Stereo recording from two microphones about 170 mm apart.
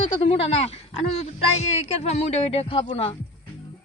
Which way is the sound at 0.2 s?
35° left (ahead or behind).